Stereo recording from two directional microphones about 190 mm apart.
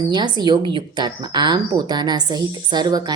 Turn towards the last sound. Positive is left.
turn(degrees=-20)  # may be behind; listen again after turning